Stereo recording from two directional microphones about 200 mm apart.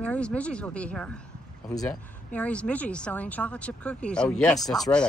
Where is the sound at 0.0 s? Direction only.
5° left (ahead or behind).